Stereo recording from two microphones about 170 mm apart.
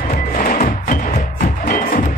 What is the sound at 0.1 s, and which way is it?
Music, 50° left (ahead or behind).